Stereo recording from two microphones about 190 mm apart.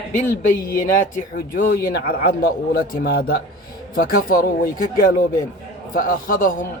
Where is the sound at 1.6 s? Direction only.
60° left (ahead or behind).